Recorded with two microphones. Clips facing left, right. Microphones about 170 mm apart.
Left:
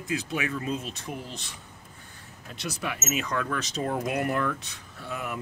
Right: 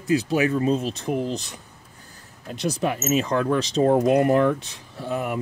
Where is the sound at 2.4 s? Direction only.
35° right (ahead or behind).